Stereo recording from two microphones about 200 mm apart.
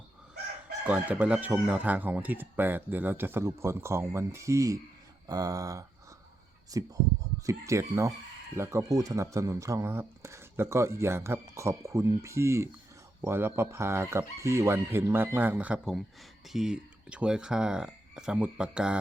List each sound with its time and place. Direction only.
0.9 s speech: 5° right (ahead or behind)